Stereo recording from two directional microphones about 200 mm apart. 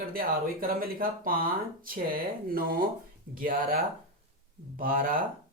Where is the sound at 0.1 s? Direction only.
45° right (ahead or behind).